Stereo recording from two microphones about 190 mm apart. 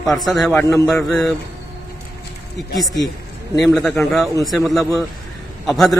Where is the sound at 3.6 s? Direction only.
Centre (ahead or behind).